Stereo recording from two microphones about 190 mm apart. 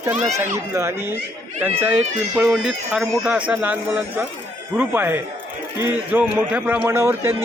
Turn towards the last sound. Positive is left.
turn(degrees=-10)  # may be behind; listen again after turning